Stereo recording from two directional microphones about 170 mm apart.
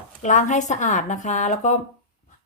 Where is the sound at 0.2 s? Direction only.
45° left (ahead or behind).